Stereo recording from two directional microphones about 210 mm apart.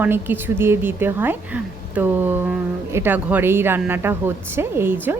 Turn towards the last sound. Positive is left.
turn(degrees=-10)  # may be behind; listen again after turning